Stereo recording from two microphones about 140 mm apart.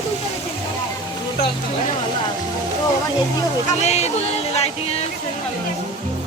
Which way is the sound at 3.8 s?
50° left (ahead or behind).